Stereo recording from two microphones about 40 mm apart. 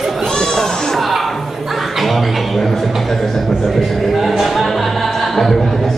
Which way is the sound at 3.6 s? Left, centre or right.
Centre.